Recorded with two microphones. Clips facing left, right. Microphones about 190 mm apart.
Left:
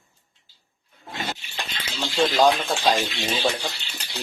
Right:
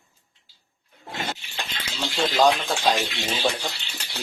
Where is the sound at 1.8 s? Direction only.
Centre (ahead or behind).